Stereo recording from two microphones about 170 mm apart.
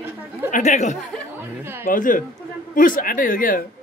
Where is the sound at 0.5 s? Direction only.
45° left (ahead or behind).